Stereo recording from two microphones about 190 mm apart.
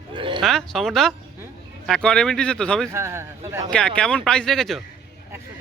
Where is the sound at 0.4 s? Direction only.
Centre (ahead or behind).